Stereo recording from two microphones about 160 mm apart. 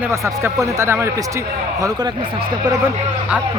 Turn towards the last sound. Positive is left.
turn(degrees=-10)  # may be behind; listen again after turning